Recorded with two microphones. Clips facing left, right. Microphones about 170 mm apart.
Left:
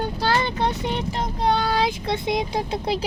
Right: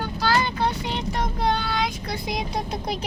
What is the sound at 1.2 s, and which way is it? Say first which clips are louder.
Speech: left 2 dB; 35° left (ahead or behind).